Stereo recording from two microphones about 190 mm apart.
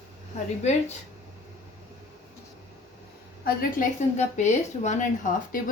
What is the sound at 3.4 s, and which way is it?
A woman's voice, 45° left (ahead or behind).